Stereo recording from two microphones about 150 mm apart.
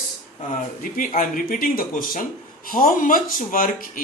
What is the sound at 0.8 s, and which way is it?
Speech, 65° left (ahead or behind).